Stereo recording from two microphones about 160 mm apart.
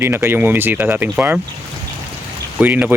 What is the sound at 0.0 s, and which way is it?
Speech, 15° right (ahead or behind).